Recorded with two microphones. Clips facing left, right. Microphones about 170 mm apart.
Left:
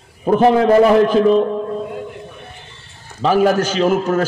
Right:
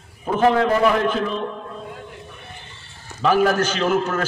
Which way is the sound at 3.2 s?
35° left (ahead or behind).